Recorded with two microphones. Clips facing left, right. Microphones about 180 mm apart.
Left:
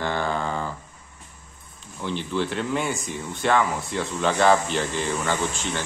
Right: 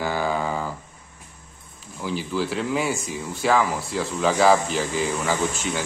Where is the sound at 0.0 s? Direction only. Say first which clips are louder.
Right 2 dB; 5° right (ahead or behind).